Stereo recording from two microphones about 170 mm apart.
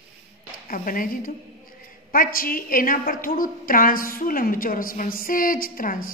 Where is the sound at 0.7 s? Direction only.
55° left (ahead or behind).